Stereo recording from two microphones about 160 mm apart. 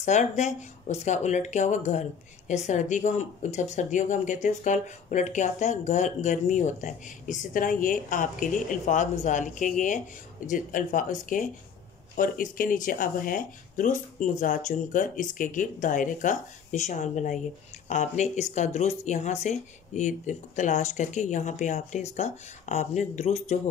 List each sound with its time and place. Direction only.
0.0 s speech: 45° left (ahead or behind)